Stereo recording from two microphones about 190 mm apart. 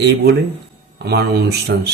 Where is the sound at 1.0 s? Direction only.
60° right (ahead or behind).